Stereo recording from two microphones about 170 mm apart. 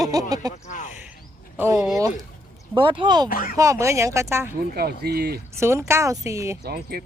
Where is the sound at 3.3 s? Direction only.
55° left (ahead or behind).